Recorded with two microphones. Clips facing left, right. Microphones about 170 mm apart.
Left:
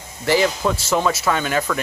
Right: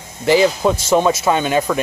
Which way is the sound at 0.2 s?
20° right (ahead or behind).